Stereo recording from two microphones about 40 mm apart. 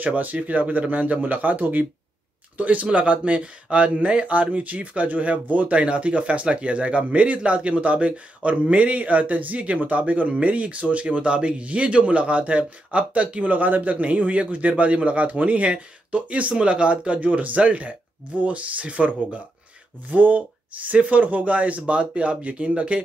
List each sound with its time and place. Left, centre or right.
0.0 s speech: right